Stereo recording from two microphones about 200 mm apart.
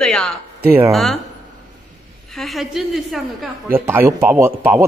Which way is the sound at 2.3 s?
Centre (ahead or behind).